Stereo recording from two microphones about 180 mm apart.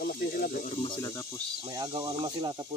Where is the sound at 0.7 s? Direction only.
35° left (ahead or behind).